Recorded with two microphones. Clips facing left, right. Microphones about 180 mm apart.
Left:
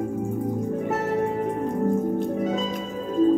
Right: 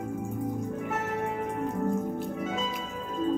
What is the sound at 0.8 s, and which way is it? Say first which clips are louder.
Music: left 7 dB; 40° left (ahead or behind).